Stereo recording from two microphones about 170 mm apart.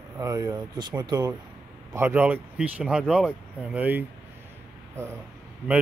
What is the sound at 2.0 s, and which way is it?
Speech, 10° right (ahead or behind).